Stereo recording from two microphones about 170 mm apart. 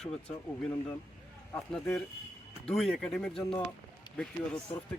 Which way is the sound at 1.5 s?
5° left (ahead or behind).